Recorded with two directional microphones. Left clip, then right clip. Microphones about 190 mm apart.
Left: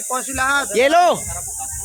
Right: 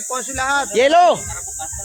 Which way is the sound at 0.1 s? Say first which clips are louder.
Left 1 dB; 25° left (ahead or behind).